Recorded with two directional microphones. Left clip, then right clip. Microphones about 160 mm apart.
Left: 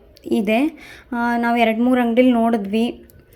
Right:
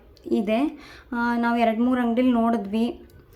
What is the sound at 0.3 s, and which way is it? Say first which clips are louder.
A woman's voice: left 5 dB; 25° left (ahead or behind).